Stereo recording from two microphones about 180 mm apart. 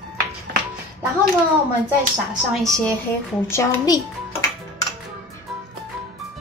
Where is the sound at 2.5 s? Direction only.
Centre (ahead or behind).